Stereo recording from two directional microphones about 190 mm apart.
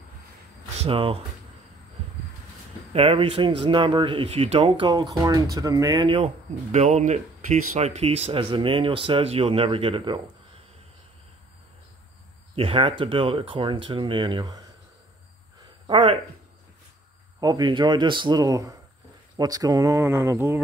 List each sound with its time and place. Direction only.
0.8 s speech: 30° right (ahead or behind)
2.9 s speech: 30° right (ahead or behind)
6.0 s speech: 30° right (ahead or behind)
12.5 s speech: 30° right (ahead or behind)
15.9 s speech: 30° right (ahead or behind)
17.4 s speech: 20° right (ahead or behind)